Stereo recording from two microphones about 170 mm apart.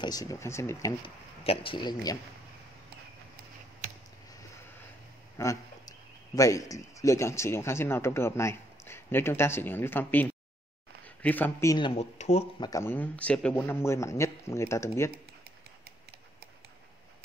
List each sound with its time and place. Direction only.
0.0 s speech: 20° left (ahead or behind)
1.0 s speech: 35° left (ahead or behind)
5.4 s a man's voice: 20° left (ahead or behind)
11.7 s speech: 30° left (ahead or behind)
12.5 s a man's voice: 20° left (ahead or behind)